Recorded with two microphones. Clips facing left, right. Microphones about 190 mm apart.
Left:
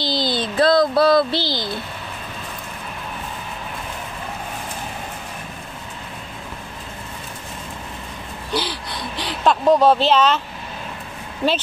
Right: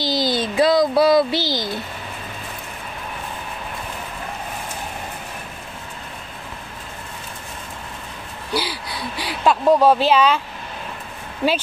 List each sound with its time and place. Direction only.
0.0 s speech: 10° right (ahead or behind)
8.5 s speech: 10° right (ahead or behind)